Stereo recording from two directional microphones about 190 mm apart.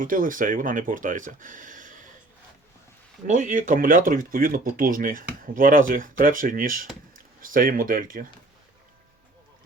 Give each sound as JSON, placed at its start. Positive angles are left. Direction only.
{"t": 0.0, "sound": "speech", "side_deg": -45}
{"t": 3.2, "sound": "speech", "side_deg": -40}